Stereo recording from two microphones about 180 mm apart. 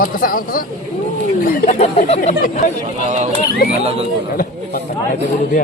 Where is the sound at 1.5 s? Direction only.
50° left (ahead or behind).